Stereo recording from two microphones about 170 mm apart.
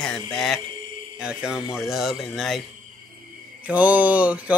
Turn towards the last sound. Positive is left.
turn(degrees=-10)  # may be behind; listen again after turning